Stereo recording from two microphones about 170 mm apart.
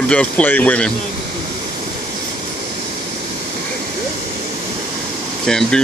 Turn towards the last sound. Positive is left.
turn(degrees=5)  # may be behind; listen again after turning